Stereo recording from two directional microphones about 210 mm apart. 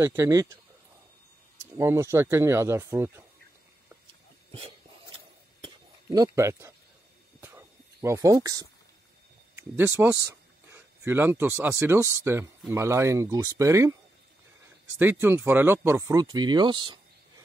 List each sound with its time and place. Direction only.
0.0 s speech: 15° right (ahead or behind)
1.8 s speech: 15° right (ahead or behind)
4.5 s a sound: 25° right (ahead or behind)
9.6 s speech: 10° right (ahead or behind)
15.0 s speech: 10° right (ahead or behind)